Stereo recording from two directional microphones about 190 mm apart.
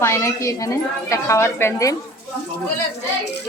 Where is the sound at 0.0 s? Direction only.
15° left (ahead or behind).